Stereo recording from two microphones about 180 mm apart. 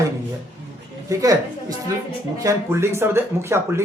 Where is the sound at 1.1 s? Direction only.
20° right (ahead or behind).